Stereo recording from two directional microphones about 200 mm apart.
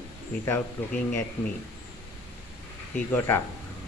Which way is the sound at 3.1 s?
10° left (ahead or behind).